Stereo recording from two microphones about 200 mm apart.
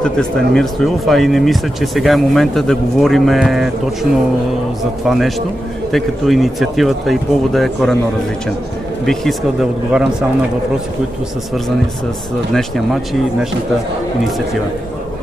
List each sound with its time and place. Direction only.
0.0 s speech: 5° left (ahead or behind)
5.0 s speech: centre (ahead or behind)
9.0 s speech: centre (ahead or behind)
12.5 s speech: centre (ahead or behind)